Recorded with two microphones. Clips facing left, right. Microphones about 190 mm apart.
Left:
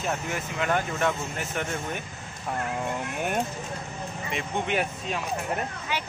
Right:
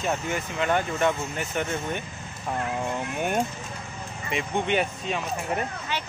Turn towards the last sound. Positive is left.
turn(degrees=0)  # may be behind; listen again after turning